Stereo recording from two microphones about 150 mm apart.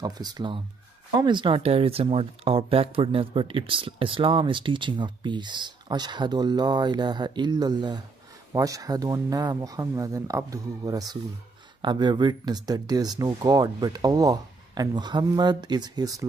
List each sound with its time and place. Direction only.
0.0 s speech: 30° right (ahead or behind)